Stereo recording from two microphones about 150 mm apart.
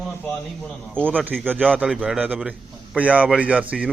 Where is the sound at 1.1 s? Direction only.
10° right (ahead or behind).